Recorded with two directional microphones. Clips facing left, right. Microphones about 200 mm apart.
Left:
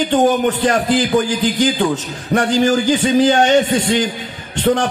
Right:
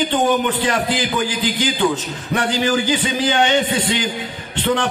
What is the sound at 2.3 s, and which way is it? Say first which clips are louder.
A man's voice: left 5 dB; 45° left (ahead or behind).